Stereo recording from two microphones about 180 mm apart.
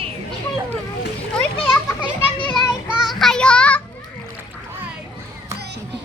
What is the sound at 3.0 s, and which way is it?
Child singing, centre (ahead or behind).